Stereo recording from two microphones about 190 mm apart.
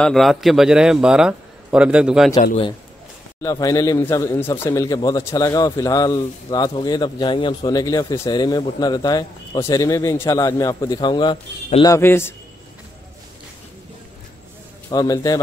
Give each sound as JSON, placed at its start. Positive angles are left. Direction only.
{"t": 0.0, "sound": "a man's voice", "side_deg": 0}
{"t": 3.4, "sound": "a man's voice", "side_deg": 15}
{"t": 14.9, "sound": "a man's voice", "side_deg": 20}